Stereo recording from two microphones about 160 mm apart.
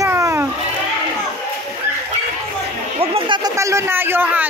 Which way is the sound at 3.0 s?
35° right (ahead or behind).